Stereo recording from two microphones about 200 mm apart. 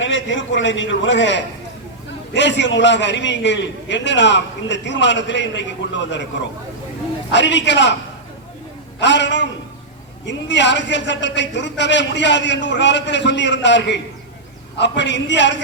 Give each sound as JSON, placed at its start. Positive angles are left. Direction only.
{"t": 0.0, "sound": "a man's voice", "side_deg": 65}
{"t": 7.3, "sound": "a man's voice", "side_deg": 65}
{"t": 9.0, "sound": "a man's voice", "side_deg": 65}